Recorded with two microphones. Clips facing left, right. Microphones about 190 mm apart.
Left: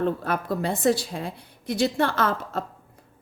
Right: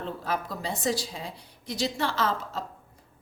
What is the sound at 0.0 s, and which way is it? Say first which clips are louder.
A woman's voice: left 6 dB; 55° left (ahead or behind).